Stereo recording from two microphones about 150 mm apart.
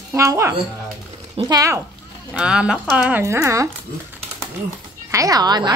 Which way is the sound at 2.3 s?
5° right (ahead or behind).